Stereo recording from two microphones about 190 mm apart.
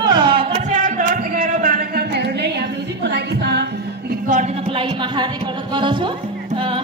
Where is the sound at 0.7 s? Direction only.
45° right (ahead or behind); by 4.1 s 60° right (ahead or behind).